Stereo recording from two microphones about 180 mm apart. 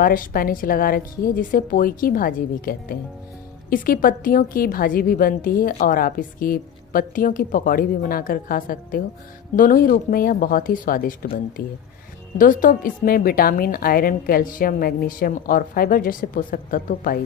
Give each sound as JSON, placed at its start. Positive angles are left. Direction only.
{"t": 0.0, "sound": "a woman's voice", "side_deg": 55}
{"t": 12.4, "sound": "a woman's voice", "side_deg": 50}